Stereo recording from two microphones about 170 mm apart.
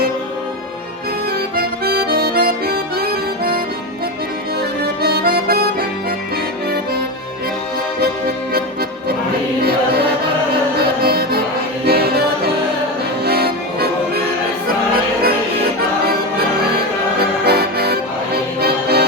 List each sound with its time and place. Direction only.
1.3 s music: 65° right (ahead or behind)
4.8 s accordion: 65° right (ahead or behind)
8.5 s accordion: 65° right (ahead or behind)
10.8 s music: 65° right (ahead or behind)
16.7 s music: 70° right (ahead or behind)